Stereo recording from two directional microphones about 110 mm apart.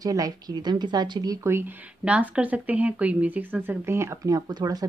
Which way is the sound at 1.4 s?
20° right (ahead or behind).